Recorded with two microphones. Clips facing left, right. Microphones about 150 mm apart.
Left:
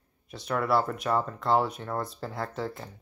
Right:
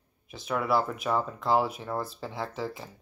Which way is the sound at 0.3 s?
Centre (ahead or behind).